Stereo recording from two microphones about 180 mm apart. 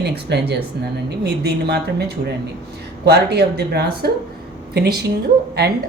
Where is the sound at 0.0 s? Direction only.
65° right (ahead or behind).